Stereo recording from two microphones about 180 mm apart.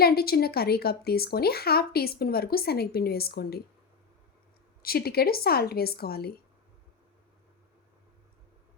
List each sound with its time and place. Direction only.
0.0 s speech: 60° left (ahead or behind)
4.8 s speech: 60° left (ahead or behind)